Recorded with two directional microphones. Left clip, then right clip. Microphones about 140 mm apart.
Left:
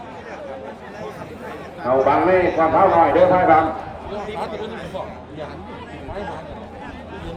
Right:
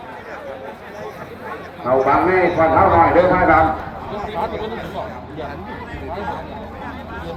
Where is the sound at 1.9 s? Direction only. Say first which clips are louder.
Right 1 dB; 25° left (ahead or behind).